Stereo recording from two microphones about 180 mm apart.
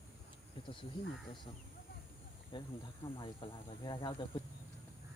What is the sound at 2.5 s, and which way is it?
Speech, 25° left (ahead or behind).